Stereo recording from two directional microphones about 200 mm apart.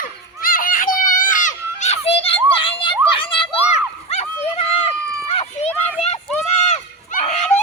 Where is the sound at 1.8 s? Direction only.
35° left (ahead or behind).